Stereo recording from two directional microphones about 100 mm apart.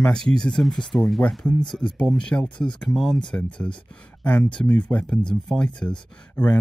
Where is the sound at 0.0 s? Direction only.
5° left (ahead or behind).